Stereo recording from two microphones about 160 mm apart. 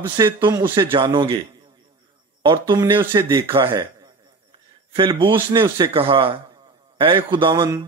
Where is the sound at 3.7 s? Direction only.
20° right (ahead or behind).